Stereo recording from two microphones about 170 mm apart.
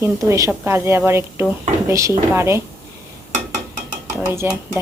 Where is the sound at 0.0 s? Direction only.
15° right (ahead or behind).